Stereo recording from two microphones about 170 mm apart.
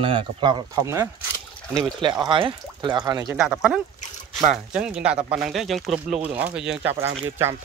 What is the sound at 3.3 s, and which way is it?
Speech, 5° right (ahead or behind).